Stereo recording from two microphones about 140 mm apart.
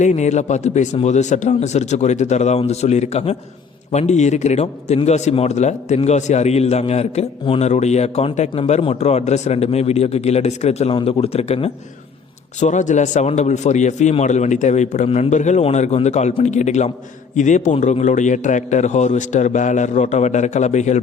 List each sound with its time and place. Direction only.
0.0 s a man's voice: 55° left (ahead or behind)
12.5 s a man's voice: 60° left (ahead or behind)